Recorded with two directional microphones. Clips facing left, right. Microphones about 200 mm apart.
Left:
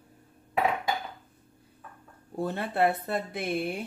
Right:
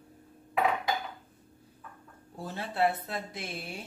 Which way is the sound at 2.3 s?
60° left (ahead or behind).